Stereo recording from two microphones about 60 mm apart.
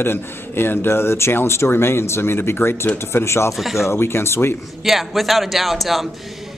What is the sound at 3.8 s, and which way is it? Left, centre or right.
Speech, left.